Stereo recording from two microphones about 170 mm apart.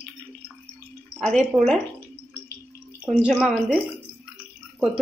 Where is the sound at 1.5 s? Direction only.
20° right (ahead or behind).